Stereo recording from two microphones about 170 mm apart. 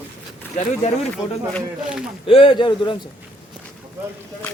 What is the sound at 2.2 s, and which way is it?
Speech, 30° left (ahead or behind).